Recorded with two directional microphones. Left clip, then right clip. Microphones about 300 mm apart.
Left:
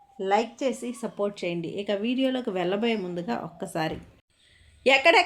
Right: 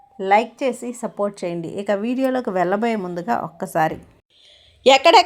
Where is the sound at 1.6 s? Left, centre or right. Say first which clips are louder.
Right 4 dB; right.